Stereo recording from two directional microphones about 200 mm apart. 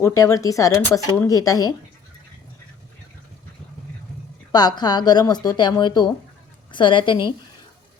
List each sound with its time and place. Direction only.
0.2 s speech: 15° left (ahead or behind)
4.5 s speech: 20° left (ahead or behind)